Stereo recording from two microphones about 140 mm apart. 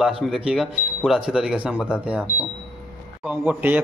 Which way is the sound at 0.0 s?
5° right (ahead or behind).